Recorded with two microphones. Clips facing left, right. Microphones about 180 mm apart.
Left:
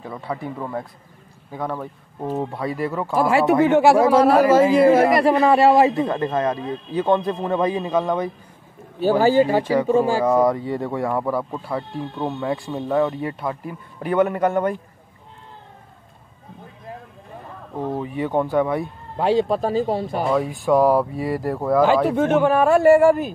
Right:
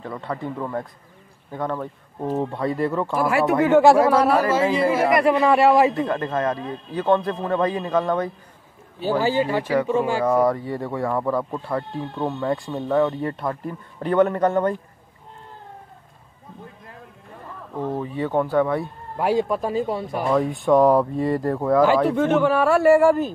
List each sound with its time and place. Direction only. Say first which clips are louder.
0.0 s speech: even; 10° left (ahead or behind)
3.2 s speech: left 4 dB; 25° left (ahead or behind)
3.8 s speech: even; 5° left (ahead or behind)
4.1 s speech: left 4 dB; 30° left (ahead or behind)
5.9 s speech: left 2 dB; 20° left (ahead or behind)
9.2 s speech: left 6 dB; 45° left (ahead or behind)
9.6 s speech: left 2 dB; 15° left (ahead or behind)
9.8 s speech: left 3 dB; 35° left (ahead or behind)
10.2 s speech: left 2 dB; 15° left (ahead or behind)
17.7 s speech: left 1 dB; 15° left (ahead or behind)
19.1 s speech: left 2 dB; 25° left (ahead or behind)
20.2 s speech: right 2 dB; 5° left (ahead or behind)
21.8 s speech: left 1 dB; 20° left (ahead or behind)